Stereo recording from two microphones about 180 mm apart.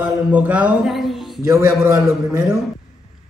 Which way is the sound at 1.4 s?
15° right (ahead or behind).